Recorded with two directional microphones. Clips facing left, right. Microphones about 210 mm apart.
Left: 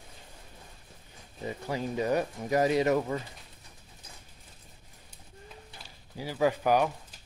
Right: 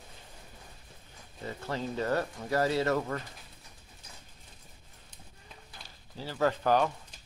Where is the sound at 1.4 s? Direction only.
15° left (ahead or behind).